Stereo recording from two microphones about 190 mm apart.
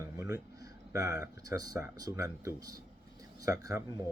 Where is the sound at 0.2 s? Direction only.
20° right (ahead or behind).